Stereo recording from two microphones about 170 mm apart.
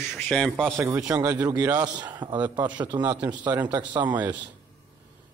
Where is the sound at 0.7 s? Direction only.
15° right (ahead or behind).